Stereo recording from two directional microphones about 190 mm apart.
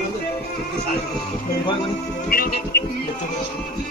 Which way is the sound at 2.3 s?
50° left (ahead or behind).